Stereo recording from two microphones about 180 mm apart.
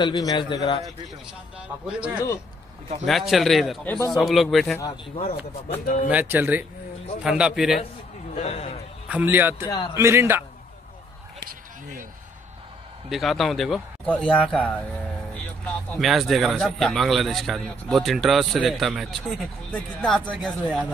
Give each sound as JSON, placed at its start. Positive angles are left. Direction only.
{"t": 0.0, "sound": "a man's voice", "side_deg": 20}
{"t": 1.9, "sound": "a man's voice", "side_deg": -5}
{"t": 6.0, "sound": "a man's voice", "side_deg": -10}
{"t": 8.4, "sound": "a man's voice", "side_deg": 35}
{"t": 9.1, "sound": "a man's voice", "side_deg": -10}
{"t": 9.7, "sound": "a man's voice", "side_deg": 25}
{"t": 9.9, "sound": "a man's voice", "side_deg": -15}
{"t": 11.3, "sound": "a sound", "side_deg": -50}
{"t": 13.1, "sound": "a man's voice", "side_deg": 0}